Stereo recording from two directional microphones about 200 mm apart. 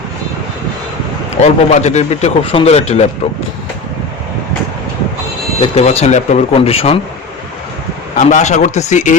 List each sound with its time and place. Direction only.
1.4 s speech: 35° left (ahead or behind)
5.5 s speech: 30° left (ahead or behind)
8.1 s speech: 35° left (ahead or behind)